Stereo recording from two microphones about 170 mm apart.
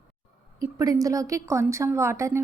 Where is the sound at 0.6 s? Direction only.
20° right (ahead or behind).